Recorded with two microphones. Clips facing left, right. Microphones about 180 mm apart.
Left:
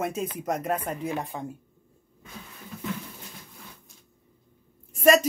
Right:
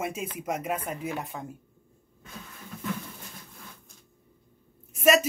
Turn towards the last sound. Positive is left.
turn(degrees=-5)  # may be behind; listen again after turning